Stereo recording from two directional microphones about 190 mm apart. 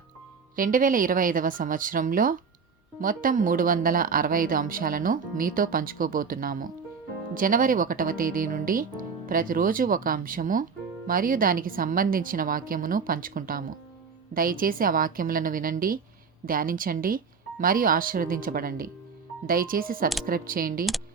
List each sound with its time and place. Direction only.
0.5 s speech: 45° right (ahead or behind)